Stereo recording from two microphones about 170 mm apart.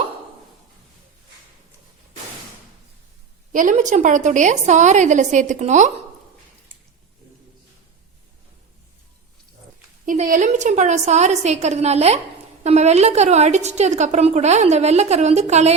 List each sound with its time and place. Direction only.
3.5 s a woman's voice: 50° right (ahead or behind)
10.1 s a woman's voice: 50° right (ahead or behind)